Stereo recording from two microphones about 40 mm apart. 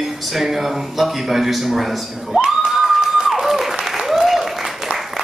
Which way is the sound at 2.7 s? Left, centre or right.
Centre.